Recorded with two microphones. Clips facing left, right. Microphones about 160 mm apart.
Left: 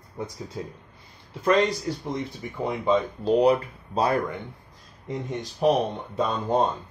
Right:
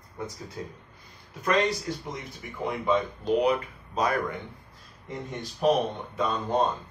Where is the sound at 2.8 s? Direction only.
30° left (ahead or behind).